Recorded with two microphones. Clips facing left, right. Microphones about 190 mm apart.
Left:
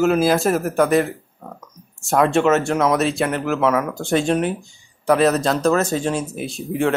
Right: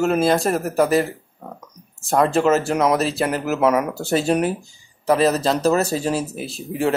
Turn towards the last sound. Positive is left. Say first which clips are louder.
# left 2 dB
turn(degrees=0)  # may be behind; listen again after turning